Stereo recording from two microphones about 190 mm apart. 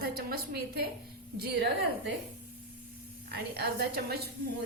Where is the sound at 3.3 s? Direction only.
55° right (ahead or behind).